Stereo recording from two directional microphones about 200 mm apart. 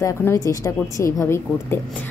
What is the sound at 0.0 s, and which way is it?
A woman's voice, 15° left (ahead or behind).